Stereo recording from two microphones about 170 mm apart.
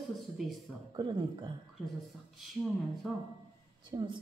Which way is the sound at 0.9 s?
25° right (ahead or behind).